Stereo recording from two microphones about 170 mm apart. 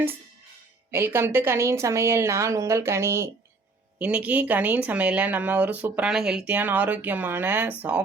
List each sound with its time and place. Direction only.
0.9 s speech: 15° right (ahead or behind)